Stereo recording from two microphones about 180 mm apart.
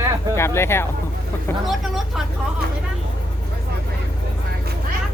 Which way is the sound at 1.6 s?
Centre (ahead or behind).